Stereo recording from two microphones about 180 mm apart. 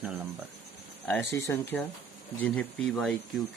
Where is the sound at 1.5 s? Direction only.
15° left (ahead or behind).